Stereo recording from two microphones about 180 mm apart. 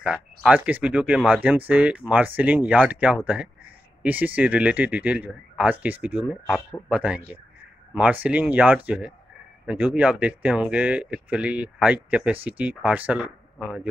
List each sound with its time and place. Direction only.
0.0 s speech: 5° right (ahead or behind)